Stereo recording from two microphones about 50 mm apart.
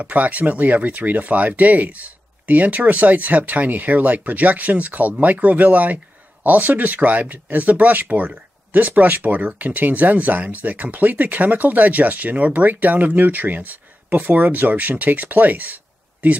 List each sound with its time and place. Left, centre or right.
0.0 s speech: right